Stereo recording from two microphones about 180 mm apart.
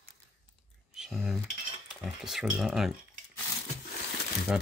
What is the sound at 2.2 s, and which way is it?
Speech, centre (ahead or behind).